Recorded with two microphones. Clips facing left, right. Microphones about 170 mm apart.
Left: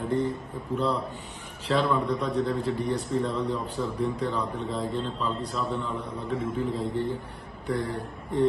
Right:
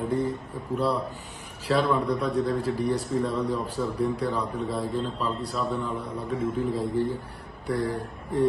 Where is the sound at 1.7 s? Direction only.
Centre (ahead or behind).